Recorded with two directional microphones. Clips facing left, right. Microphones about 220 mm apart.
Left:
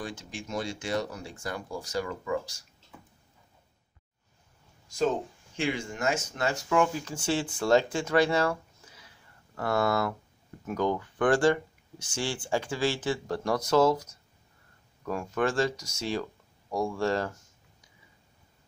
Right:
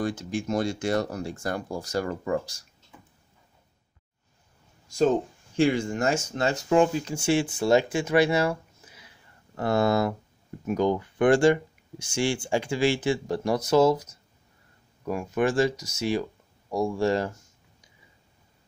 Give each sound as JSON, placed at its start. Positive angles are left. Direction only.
{"t": 0.0, "sound": "speech", "side_deg": -45}
{"t": 5.6, "sound": "speech", "side_deg": -35}
{"t": 7.2, "sound": "speech", "side_deg": -10}
{"t": 9.6, "sound": "speech", "side_deg": -20}
{"t": 15.0, "sound": "speech", "side_deg": -15}